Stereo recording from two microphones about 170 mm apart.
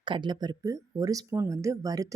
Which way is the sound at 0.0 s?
30° right (ahead or behind).